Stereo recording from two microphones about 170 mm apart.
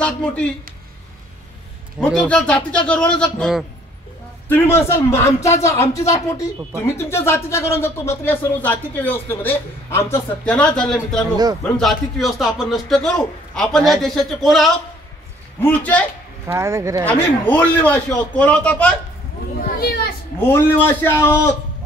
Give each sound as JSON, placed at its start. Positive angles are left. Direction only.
{"t": 0.0, "sound": "speech", "side_deg": 5}
{"t": 2.1, "sound": "a man's voice", "side_deg": 5}
{"t": 16.4, "sound": "speech", "side_deg": -15}
{"t": 17.0, "sound": "speech", "side_deg": 10}
{"t": 19.6, "sound": "children playing", "side_deg": 65}
{"t": 20.3, "sound": "speech", "side_deg": 15}